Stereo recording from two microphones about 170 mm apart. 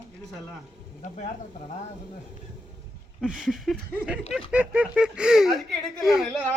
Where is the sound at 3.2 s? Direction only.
5° right (ahead or behind).